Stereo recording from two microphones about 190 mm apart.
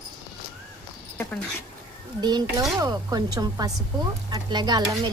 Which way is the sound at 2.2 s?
20° right (ahead or behind).